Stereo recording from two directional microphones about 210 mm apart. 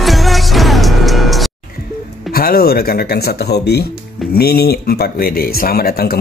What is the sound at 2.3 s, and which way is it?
Speech, 45° left (ahead or behind).